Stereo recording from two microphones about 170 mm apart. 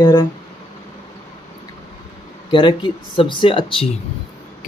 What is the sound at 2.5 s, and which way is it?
Speech, 30° left (ahead or behind).